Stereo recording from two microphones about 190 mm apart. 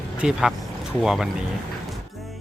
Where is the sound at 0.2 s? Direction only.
5° right (ahead or behind).